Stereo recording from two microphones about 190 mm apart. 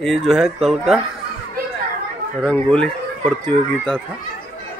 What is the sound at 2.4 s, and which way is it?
Speech, 5° left (ahead or behind).